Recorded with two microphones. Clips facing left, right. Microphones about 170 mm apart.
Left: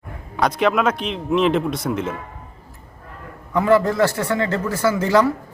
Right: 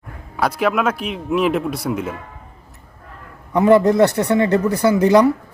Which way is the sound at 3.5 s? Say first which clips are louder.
Right 4 dB; 20° right (ahead or behind).